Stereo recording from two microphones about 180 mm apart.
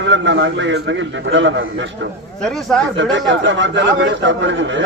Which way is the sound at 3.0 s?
90° right.